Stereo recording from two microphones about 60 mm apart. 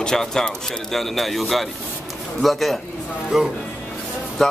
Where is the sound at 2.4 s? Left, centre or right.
Centre.